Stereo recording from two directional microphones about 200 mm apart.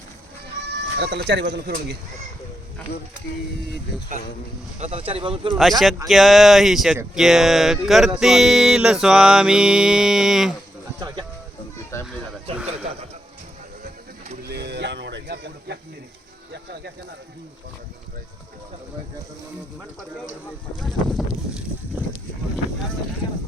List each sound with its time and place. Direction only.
0.9 s speech: 55° right (ahead or behind)
4.8 s speech: 30° right (ahead or behind)
5.5 s mantra: centre (ahead or behind)
11.9 s a sound: 15° left (ahead or behind)
14.4 s music: 55° right (ahead or behind)
16.5 s speech: 55° right (ahead or behind)
20.7 s mantra: centre (ahead or behind)